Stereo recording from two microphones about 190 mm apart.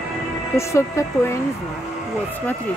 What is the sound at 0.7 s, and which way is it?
Speech, 15° left (ahead or behind).